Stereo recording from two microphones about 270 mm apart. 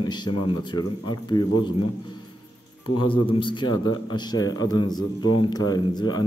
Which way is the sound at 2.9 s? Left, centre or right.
Centre.